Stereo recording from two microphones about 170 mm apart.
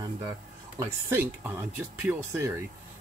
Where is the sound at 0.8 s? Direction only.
10° right (ahead or behind).